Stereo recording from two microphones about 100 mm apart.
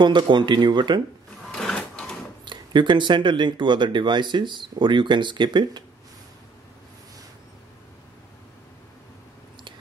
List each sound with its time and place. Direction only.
0.0 s speech: 50° right (ahead or behind)
1.5 s a sound: 5° left (ahead or behind)
2.4 s speech: 50° right (ahead or behind)